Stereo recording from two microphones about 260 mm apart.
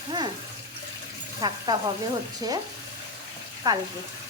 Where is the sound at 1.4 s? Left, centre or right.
Centre.